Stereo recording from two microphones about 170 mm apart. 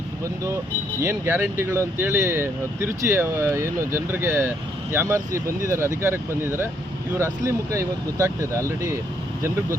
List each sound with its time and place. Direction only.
1.0 s speech: 15° right (ahead or behind)